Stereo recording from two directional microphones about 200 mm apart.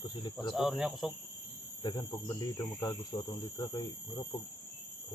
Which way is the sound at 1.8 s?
20° left (ahead or behind).